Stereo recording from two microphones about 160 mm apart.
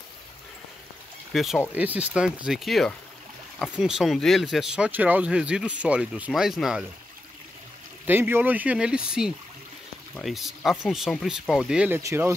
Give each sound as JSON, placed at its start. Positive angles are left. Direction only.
{"t": 1.3, "sound": "speech", "side_deg": 0}
{"t": 8.1, "sound": "speech", "side_deg": -15}
{"t": 12.0, "sound": "speech", "side_deg": -20}